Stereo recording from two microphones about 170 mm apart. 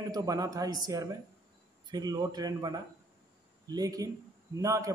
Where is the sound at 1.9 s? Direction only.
25° right (ahead or behind).